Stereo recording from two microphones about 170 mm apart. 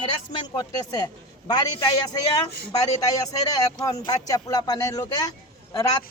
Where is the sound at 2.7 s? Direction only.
20° left (ahead or behind).